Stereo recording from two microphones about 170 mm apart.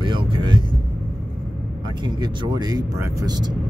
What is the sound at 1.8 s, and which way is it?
Speech, 25° right (ahead or behind).